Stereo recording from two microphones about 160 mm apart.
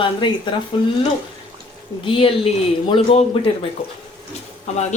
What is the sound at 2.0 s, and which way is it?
A woman's voice, 35° left (ahead or behind).